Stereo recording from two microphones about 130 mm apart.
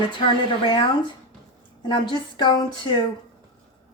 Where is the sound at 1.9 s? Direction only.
40° left (ahead or behind).